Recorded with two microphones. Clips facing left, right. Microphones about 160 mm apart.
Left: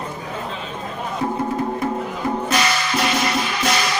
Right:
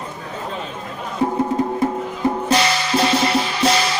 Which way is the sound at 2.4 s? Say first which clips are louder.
Right 2 dB; 30° right (ahead or behind).